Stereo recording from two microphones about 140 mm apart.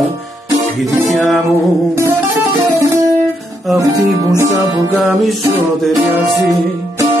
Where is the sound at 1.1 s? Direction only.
Centre (ahead or behind).